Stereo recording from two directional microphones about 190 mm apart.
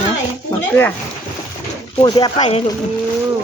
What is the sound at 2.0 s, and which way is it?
Speech, 20° left (ahead or behind).